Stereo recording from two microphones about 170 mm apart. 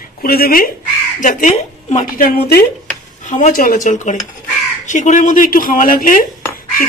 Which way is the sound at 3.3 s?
50° left (ahead or behind).